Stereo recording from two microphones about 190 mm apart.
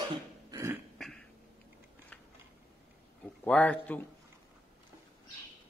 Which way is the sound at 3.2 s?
10° left (ahead or behind).